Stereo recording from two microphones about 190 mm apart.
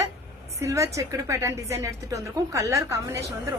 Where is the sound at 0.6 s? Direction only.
15° right (ahead or behind).